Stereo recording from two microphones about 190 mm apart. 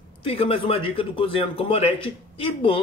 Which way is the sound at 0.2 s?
30° left (ahead or behind).